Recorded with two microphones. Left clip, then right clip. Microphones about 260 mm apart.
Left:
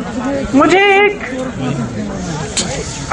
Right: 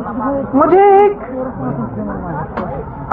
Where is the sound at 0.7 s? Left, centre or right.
Right.